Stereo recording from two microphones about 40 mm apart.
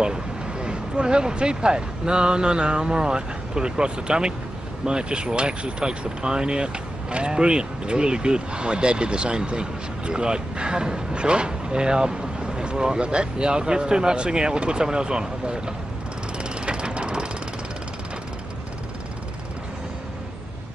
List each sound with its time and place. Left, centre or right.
0.0 s speech: right
16.3 s vehicle: right